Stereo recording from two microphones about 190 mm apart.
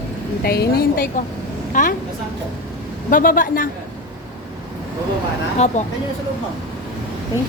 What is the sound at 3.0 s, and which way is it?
Speech, 45° left (ahead or behind).